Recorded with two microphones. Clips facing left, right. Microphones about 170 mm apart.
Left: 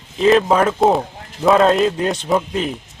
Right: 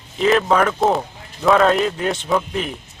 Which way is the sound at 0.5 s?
10° left (ahead or behind).